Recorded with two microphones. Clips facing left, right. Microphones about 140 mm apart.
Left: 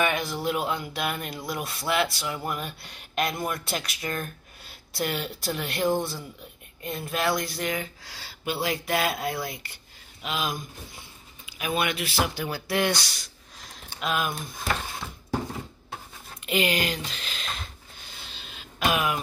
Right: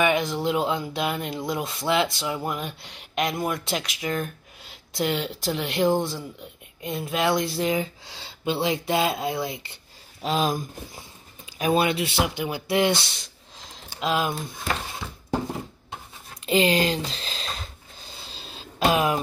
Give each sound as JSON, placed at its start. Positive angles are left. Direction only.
{"t": 0.0, "sound": "speech", "side_deg": -20}
{"t": 10.2, "sound": "speech", "side_deg": -35}
{"t": 16.4, "sound": "a sound", "side_deg": -35}